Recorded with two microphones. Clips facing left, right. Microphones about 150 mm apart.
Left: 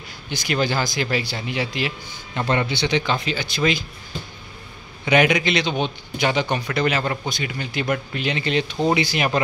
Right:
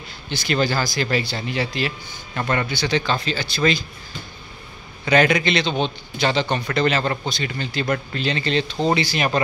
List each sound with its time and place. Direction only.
0.3 s a man's voice: 15° left (ahead or behind)
2.4 s a man's voice: 25° left (ahead or behind)
5.0 s a man's voice: 10° left (ahead or behind)